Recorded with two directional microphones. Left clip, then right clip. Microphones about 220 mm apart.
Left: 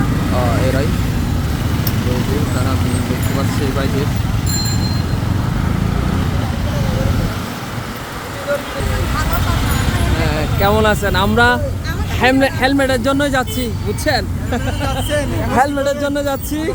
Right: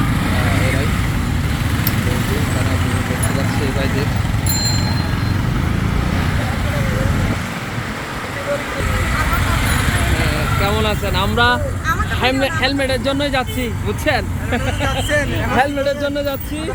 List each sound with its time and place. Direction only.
10.6 s speech: 25° left (ahead or behind)
14.0 s speech: 5° left (ahead or behind)